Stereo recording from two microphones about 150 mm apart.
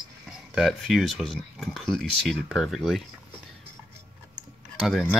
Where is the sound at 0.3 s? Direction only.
Centre (ahead or behind).